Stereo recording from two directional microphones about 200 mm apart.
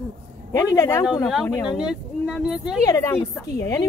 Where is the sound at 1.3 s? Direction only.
Centre (ahead or behind).